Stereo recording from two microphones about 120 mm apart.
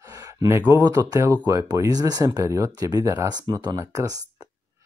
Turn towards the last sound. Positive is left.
turn(degrees=-30)  # may be behind; listen again after turning